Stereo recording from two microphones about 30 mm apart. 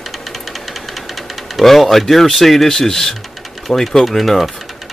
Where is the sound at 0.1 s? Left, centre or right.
Centre.